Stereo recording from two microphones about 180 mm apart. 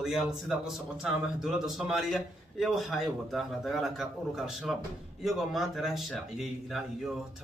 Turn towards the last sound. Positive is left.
turn(degrees=0)  # may be behind; listen again after turning